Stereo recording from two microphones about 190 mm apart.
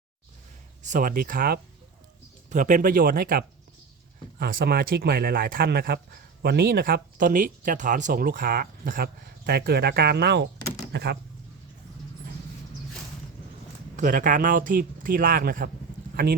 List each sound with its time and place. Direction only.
0.8 s speech: 40° right (ahead or behind)
4.5 s speech: 55° right (ahead or behind)
13.9 s speech: 45° right (ahead or behind)